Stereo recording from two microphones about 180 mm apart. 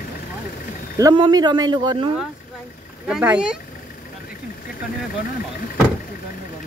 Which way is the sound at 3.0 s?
5° right (ahead or behind).